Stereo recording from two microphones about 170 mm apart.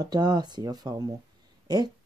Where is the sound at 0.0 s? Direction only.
25° right (ahead or behind).